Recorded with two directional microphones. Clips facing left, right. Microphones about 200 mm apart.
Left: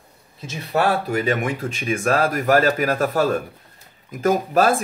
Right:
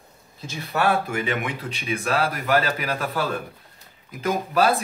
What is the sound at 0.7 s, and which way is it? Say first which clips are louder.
Speech: left 3 dB; 35° left (ahead or behind).